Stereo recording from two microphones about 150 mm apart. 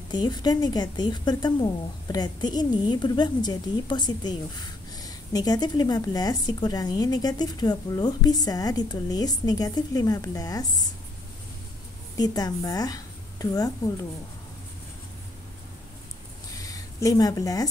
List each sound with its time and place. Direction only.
0.1 s speech: 30° left (ahead or behind)
12.2 s a woman's voice: 25° left (ahead or behind)
16.5 s a sound: 25° left (ahead or behind)